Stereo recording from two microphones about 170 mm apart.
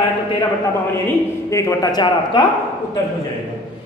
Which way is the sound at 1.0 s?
20° left (ahead or behind).